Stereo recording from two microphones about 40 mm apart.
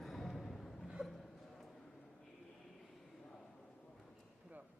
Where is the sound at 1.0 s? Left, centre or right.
Right.